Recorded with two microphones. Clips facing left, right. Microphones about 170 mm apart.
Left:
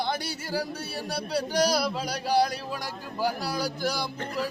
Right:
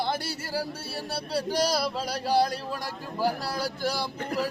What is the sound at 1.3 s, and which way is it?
Speech, centre (ahead or behind).